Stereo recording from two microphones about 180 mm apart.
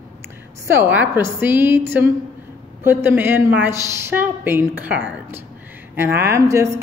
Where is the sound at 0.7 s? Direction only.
10° right (ahead or behind).